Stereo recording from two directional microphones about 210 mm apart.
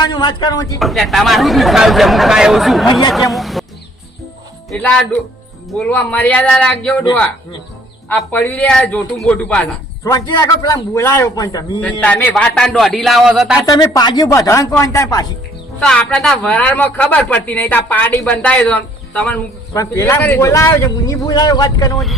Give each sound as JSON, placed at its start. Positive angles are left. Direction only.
{"t": 0.0, "sound": "speech", "side_deg": 20}
{"t": 0.8, "sound": "speech", "side_deg": 0}
{"t": 3.3, "sound": "a sound", "side_deg": 0}
{"t": 4.7, "sound": "speech", "side_deg": 5}
{"t": 11.8, "sound": "speech", "side_deg": 5}
{"t": 13.7, "sound": "speech", "side_deg": 20}
{"t": 15.8, "sound": "speech", "side_deg": 5}